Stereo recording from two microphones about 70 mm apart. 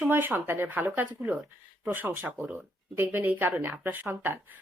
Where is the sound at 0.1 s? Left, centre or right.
Right.